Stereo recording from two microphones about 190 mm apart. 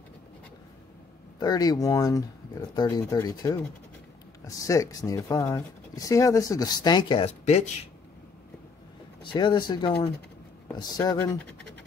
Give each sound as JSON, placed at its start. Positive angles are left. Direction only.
{"t": 1.4, "sound": "speech", "side_deg": 20}
{"t": 9.2, "sound": "speech", "side_deg": 25}